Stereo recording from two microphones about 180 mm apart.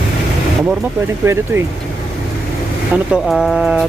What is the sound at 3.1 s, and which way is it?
Speech, centre (ahead or behind).